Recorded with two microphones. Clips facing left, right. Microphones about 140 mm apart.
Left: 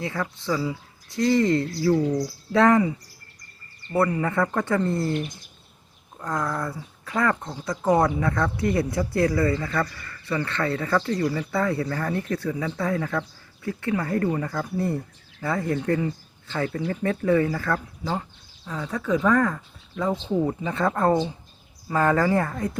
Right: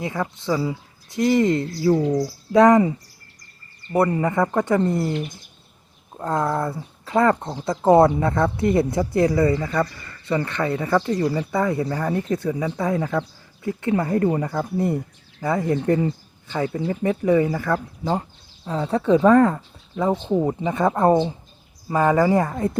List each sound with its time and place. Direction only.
0.0 s speech: 20° right (ahead or behind)
4.2 s speech: 20° right (ahead or behind)
6.1 s speech: 30° right (ahead or behind)
16.5 s speech: 20° right (ahead or behind)
18.2 s speech: 30° right (ahead or behind)